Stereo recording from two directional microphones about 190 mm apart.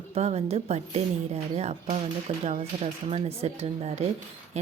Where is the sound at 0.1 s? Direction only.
35° right (ahead or behind).